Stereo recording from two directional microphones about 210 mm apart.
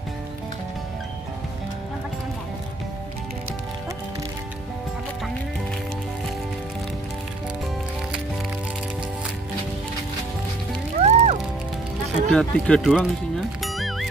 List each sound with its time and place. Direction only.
11.0 s music: 30° right (ahead or behind)
12.3 s speech: 5° left (ahead or behind)
13.6 s music: centre (ahead or behind)